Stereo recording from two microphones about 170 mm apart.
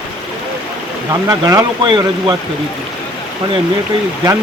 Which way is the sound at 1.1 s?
20° right (ahead or behind).